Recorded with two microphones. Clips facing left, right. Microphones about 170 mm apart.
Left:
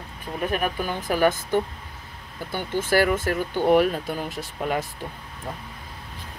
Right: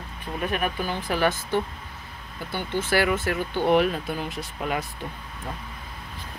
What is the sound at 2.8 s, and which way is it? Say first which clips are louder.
Speech: left 3 dB; 45° left (ahead or behind).